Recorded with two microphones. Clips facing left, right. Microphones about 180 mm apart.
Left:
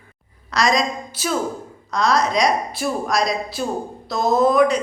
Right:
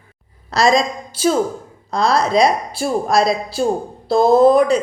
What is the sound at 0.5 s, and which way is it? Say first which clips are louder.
A woman's voice: right 4 dB; 30° right (ahead or behind).